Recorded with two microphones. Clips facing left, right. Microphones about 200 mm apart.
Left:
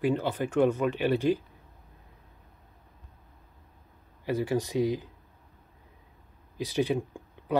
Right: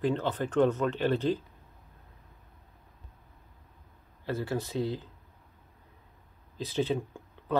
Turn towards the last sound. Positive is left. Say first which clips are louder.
# left 2 dB
turn(degrees=15)  # may be behind; listen again after turning